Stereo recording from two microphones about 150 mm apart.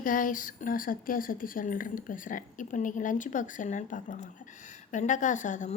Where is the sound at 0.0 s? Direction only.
65° left (ahead or behind).